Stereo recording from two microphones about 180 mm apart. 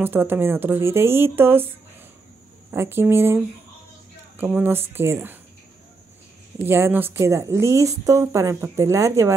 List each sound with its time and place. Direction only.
0.0 s a woman's voice: 10° right (ahead or behind)
2.7 s a woman's voice: 15° right (ahead or behind)
6.6 s a woman's voice: 10° right (ahead or behind)